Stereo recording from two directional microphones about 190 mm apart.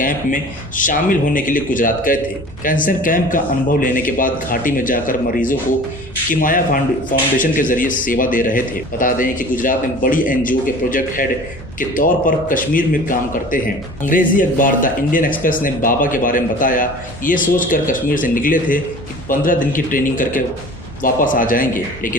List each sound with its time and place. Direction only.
0.8 s speech: 45° left (ahead or behind)